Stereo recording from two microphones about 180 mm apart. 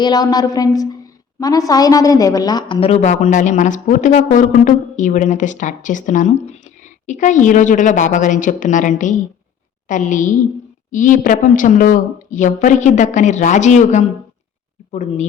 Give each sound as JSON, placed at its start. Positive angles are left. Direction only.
{"t": 0.0, "sound": "a woman's voice", "side_deg": 20}